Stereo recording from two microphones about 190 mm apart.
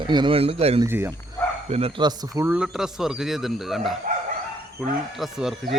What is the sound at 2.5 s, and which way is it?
Speech, 5° right (ahead or behind).